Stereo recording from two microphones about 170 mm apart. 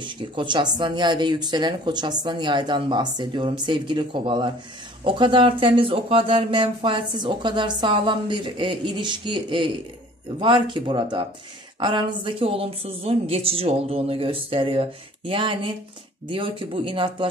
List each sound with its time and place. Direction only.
0.0 s speech: 30° right (ahead or behind)